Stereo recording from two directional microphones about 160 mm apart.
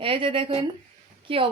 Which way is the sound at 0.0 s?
35° right (ahead or behind).